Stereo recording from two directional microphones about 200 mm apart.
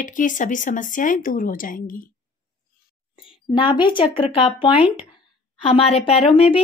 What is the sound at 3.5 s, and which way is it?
Speech, 25° left (ahead or behind).